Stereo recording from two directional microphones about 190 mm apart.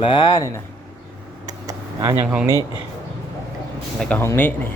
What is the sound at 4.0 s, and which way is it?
Speech, 10° left (ahead or behind).